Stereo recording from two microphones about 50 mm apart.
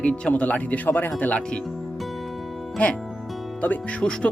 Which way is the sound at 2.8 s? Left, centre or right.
Left.